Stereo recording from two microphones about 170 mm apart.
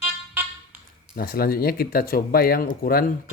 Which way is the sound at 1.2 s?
60° left (ahead or behind).